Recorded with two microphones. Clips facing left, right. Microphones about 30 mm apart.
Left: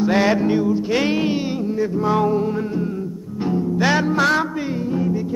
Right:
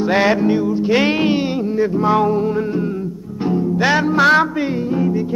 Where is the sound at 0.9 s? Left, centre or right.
Right.